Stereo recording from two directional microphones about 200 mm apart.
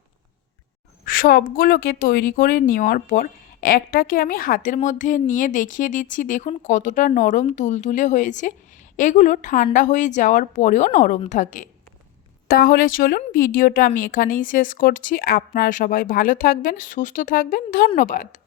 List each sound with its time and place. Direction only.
1.0 s a woman's voice: 45° left (ahead or behind)